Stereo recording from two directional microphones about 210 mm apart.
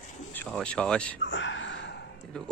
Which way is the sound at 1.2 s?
60° left (ahead or behind).